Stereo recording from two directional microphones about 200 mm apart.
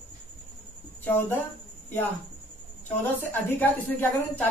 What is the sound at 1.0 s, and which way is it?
Speech, 10° left (ahead or behind).